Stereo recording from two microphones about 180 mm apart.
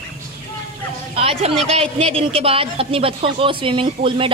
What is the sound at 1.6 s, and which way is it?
Speech, 35° right (ahead or behind).